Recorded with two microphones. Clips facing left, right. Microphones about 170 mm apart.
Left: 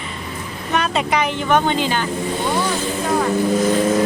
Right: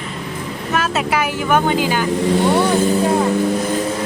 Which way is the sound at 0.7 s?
5° right (ahead or behind).